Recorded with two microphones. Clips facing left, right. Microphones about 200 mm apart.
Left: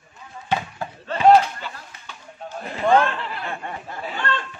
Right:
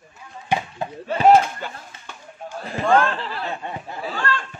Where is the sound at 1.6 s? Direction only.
50° right (ahead or behind).